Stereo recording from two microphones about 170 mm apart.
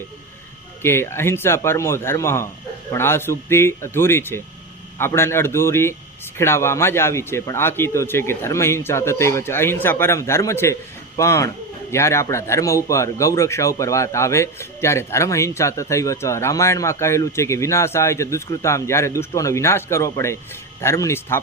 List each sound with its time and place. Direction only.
0.8 s a man's voice: 15° left (ahead or behind)